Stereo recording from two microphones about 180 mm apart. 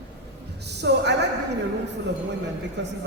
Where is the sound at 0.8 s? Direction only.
70° right (ahead or behind).